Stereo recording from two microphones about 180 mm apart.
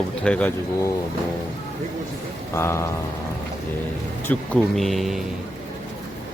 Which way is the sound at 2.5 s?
15° left (ahead or behind).